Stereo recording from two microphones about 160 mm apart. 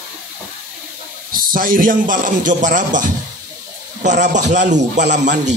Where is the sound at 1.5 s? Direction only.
60° right (ahead or behind).